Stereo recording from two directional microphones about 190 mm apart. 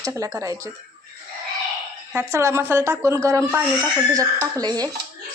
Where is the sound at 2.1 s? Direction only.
15° right (ahead or behind).